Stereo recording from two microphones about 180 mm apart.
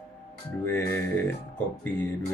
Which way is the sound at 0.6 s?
10° left (ahead or behind).